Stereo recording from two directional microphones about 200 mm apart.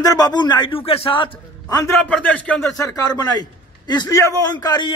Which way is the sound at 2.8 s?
20° left (ahead or behind).